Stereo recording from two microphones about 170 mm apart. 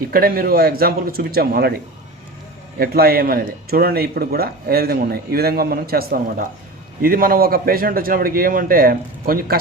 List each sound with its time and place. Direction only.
0.1 s speech: 60° right (ahead or behind)